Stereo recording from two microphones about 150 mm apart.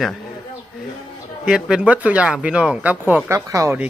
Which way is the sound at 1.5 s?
5° right (ahead or behind).